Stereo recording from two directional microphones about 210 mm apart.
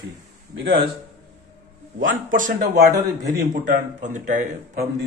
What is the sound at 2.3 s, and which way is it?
A man's voice, 40° right (ahead or behind).